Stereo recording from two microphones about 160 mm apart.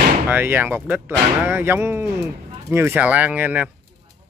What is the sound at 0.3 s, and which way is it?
Speech, 10° right (ahead or behind).